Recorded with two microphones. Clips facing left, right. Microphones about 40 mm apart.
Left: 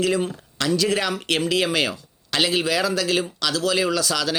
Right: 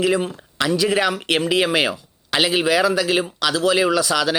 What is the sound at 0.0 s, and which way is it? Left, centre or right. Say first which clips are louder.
Speech: right 2 dB; centre.